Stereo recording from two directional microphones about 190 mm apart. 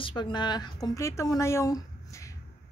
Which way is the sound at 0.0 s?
25° left (ahead or behind).